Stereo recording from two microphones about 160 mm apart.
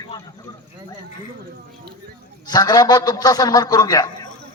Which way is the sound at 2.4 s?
25° left (ahead or behind).